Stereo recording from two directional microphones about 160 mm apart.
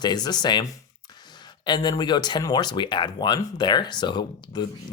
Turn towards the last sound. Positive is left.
turn(degrees=25)  # may be behind; listen again after turning